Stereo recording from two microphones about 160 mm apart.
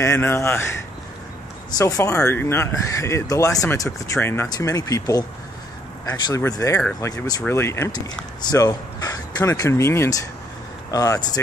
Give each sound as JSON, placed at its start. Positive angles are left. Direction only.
{"t": 0.0, "sound": "speech", "side_deg": 15}
{"t": 1.8, "sound": "speech", "side_deg": 20}